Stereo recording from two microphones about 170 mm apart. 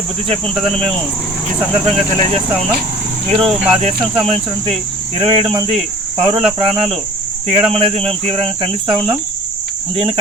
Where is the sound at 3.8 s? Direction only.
35° right (ahead or behind).